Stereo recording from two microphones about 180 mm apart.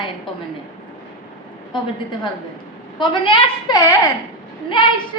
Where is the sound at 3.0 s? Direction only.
25° left (ahead or behind).